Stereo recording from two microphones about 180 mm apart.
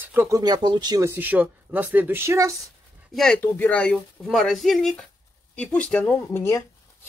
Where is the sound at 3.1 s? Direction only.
5° left (ahead or behind).